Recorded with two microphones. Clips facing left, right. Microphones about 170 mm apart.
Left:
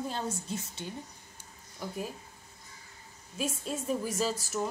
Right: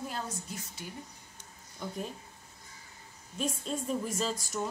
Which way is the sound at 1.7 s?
5° left (ahead or behind).